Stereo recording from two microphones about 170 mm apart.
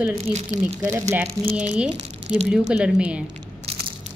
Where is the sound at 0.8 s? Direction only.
20° right (ahead or behind).